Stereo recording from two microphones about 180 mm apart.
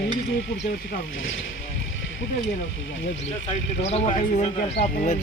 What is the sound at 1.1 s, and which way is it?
Speech, 90° left.